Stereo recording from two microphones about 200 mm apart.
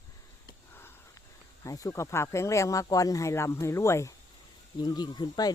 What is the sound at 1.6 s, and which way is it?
Speech, 15° left (ahead or behind).